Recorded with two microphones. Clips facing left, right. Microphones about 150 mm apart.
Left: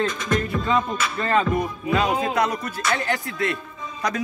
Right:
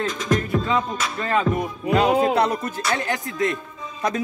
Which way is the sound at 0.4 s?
5° right (ahead or behind).